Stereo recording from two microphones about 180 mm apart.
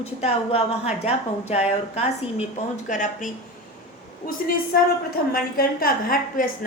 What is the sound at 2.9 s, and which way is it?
Speech, 45° left (ahead or behind).